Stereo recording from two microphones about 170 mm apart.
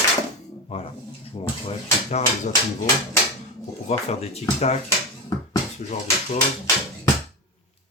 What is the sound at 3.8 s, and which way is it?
Speech, 40° left (ahead or behind).